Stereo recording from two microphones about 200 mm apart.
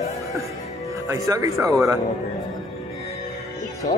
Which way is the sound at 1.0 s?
15° right (ahead or behind).